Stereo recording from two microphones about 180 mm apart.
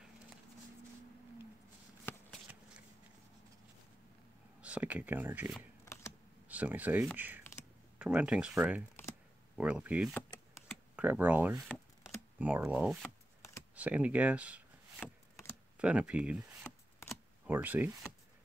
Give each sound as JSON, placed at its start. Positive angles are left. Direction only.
{"t": 4.6, "sound": "speech", "side_deg": -5}
{"t": 11.6, "sound": "a sound", "side_deg": 0}
{"t": 12.4, "sound": "speech", "side_deg": -10}
{"t": 15.8, "sound": "speech", "side_deg": -5}
{"t": 16.6, "sound": "a sound", "side_deg": 5}
{"t": 17.5, "sound": "speech", "side_deg": -10}